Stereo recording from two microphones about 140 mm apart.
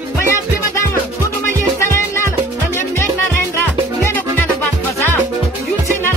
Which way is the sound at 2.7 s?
20° left (ahead or behind).